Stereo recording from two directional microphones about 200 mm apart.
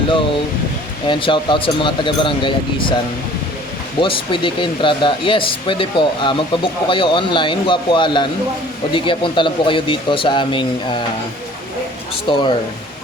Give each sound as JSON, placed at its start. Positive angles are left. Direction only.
{"t": 1.0, "sound": "speech", "side_deg": 25}
{"t": 4.0, "sound": "speech", "side_deg": 25}
{"t": 12.3, "sound": "speech", "side_deg": 25}